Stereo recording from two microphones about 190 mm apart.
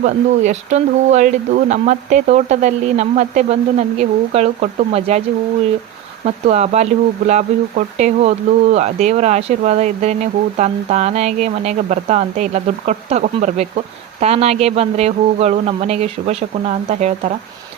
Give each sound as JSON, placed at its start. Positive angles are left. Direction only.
{"t": 0.0, "sound": "speech", "side_deg": -40}
{"t": 6.2, "sound": "speech", "side_deg": -35}